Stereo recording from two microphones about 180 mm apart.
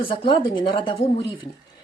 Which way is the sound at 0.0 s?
30° left (ahead or behind).